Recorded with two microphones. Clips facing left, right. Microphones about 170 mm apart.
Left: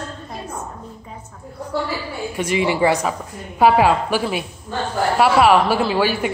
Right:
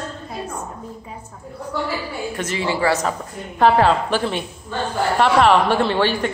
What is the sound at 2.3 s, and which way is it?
A woman's voice, 10° left (ahead or behind).